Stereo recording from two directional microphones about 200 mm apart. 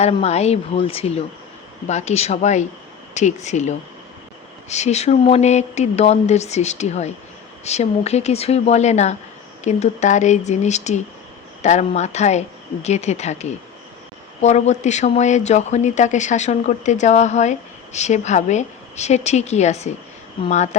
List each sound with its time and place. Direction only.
0.0 s speech: 35° left (ahead or behind)